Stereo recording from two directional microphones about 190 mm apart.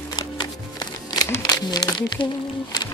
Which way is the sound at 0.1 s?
20° left (ahead or behind).